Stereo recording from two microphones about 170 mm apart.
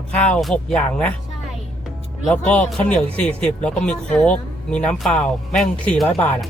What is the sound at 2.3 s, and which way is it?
Speech, 5° left (ahead or behind).